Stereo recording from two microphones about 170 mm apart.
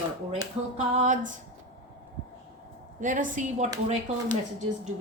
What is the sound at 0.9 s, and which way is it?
Speech, 45° right (ahead or behind).